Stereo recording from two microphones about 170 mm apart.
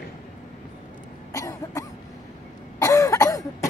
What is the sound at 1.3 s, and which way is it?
Cough, 20° left (ahead or behind).